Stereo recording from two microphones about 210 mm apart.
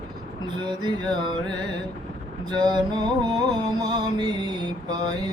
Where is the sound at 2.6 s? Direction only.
20° right (ahead or behind).